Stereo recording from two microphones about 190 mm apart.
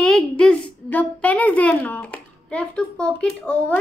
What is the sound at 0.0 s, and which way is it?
A woman's voice, 5° left (ahead or behind).